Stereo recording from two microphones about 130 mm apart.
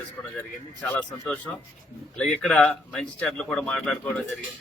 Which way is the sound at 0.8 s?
10° left (ahead or behind).